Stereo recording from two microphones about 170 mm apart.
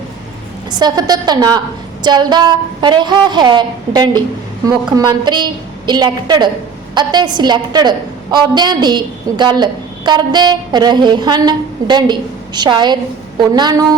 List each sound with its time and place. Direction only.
0.7 s a woman's voice: 25° right (ahead or behind)